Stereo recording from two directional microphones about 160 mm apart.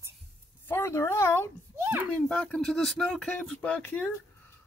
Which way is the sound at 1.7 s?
15° right (ahead or behind).